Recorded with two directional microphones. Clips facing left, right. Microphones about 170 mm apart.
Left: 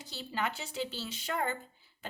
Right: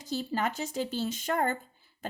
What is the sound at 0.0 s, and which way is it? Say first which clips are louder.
Speech: right 6 dB; 45° right (ahead or behind).